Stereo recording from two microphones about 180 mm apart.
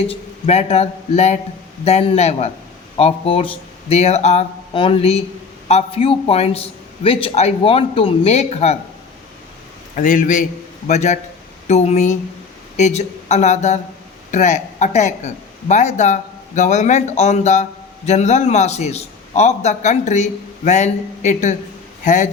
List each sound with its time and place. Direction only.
0.1 s a man's voice: 35° left (ahead or behind)
9.9 s a man's voice: 45° left (ahead or behind)